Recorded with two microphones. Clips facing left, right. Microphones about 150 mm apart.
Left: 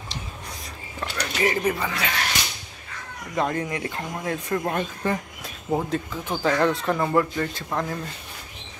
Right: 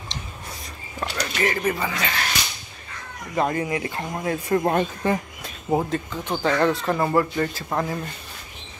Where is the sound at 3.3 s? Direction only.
5° right (ahead or behind).